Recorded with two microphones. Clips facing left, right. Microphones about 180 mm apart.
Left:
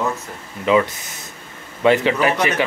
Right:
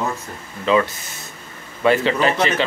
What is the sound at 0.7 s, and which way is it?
Speech, 15° left (ahead or behind).